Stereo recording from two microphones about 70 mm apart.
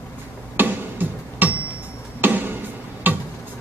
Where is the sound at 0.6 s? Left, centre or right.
Right.